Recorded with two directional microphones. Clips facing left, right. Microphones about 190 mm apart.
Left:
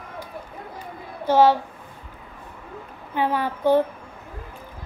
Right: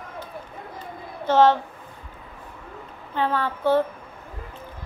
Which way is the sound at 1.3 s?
10° left (ahead or behind).